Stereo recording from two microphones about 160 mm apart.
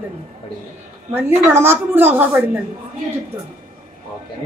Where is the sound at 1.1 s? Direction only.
15° right (ahead or behind).